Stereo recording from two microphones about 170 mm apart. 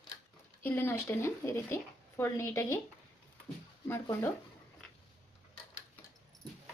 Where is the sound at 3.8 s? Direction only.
15° left (ahead or behind).